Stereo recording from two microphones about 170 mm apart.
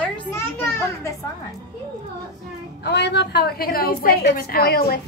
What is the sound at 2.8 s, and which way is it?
A woman's voice, 85° left.